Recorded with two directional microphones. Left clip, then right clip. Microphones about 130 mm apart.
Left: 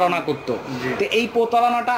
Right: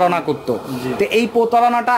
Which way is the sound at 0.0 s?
25° right (ahead or behind).